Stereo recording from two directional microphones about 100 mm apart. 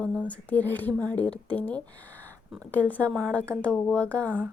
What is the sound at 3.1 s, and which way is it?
A woman's voice, 5° left (ahead or behind).